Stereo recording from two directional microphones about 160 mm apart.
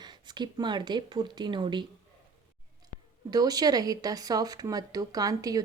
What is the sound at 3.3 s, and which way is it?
A woman's voice, 25° right (ahead or behind).